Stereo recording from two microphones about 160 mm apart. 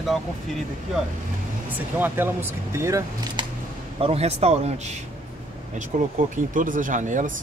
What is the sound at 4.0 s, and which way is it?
Speech, 40° right (ahead or behind).